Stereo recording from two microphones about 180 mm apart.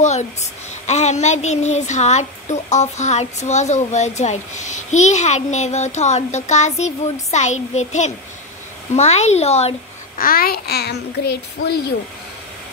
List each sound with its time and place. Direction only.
0.0 s a child's voice: 40° left (ahead or behind)
10.1 s a child's voice: 55° left (ahead or behind)